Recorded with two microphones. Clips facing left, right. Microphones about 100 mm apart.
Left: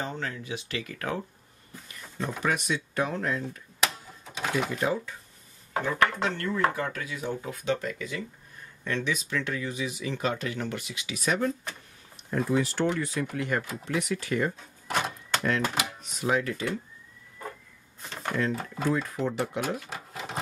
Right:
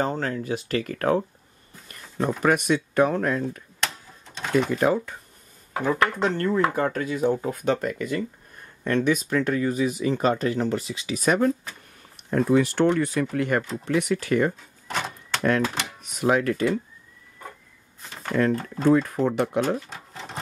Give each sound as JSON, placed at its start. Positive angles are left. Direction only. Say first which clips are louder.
{"t": 0.0, "sound": "speech", "louder": "right 8 dB", "side_deg": -45}
{"t": 1.9, "sound": "a sound", "louder": "right 8 dB", "side_deg": -55}
{"t": 2.4, "sound": "speech", "louder": "right 7 dB", "side_deg": -55}
{"t": 3.8, "sound": "a sound", "louder": "left 1 dB", "side_deg": 5}
{"t": 4.7, "sound": "speech", "louder": "right 6 dB", "side_deg": -55}
{"t": 5.9, "sound": "speech", "louder": "right 4 dB", "side_deg": -40}
{"t": 12.3, "sound": "speech", "louder": "right 6 dB", "side_deg": -65}
{"t": 14.9, "sound": "power windows", "louder": "even", "side_deg": 10}
{"t": 15.6, "sound": "speech", "louder": "right 2 dB", "side_deg": 5}
{"t": 16.2, "sound": "speech", "louder": "right 6 dB", "side_deg": -60}
{"t": 18.5, "sound": "speech", "louder": "right 5 dB", "side_deg": 5}
{"t": 19.0, "sound": "speech", "louder": "right 6 dB", "side_deg": -60}
{"t": 19.9, "sound": "sewing machine", "louder": "left 1 dB", "side_deg": 5}